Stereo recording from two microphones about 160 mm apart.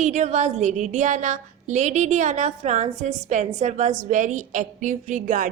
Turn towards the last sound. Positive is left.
turn(degrees=-50)  # may be behind; listen again after turning